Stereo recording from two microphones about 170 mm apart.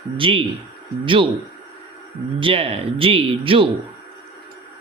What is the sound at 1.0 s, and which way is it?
Speech, 30° right (ahead or behind).